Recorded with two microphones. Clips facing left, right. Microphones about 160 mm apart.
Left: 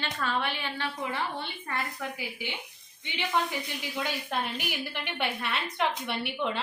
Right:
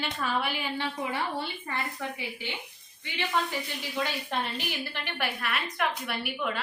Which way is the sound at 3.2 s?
15° left (ahead or behind).